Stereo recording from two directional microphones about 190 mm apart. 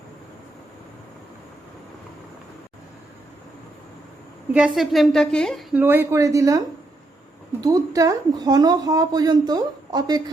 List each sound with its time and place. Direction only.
4.5 s a woman's voice: 5° right (ahead or behind)
5.7 s speech: 10° right (ahead or behind)
7.6 s speech: 20° right (ahead or behind)